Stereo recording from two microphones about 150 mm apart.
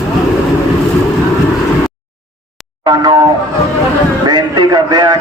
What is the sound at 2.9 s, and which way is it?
Speech, 25° right (ahead or behind).